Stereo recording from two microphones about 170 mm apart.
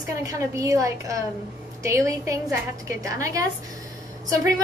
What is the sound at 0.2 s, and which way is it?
A woman's voice, 20° right (ahead or behind).